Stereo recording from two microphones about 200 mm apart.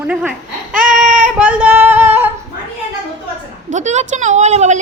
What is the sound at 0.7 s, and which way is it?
Baby cry, 40° right (ahead or behind).